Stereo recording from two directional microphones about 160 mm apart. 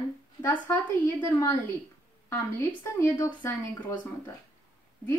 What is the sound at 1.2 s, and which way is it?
Speech, 20° left (ahead or behind).